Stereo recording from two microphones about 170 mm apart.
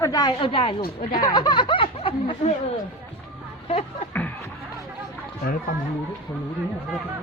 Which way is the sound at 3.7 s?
40° left (ahead or behind).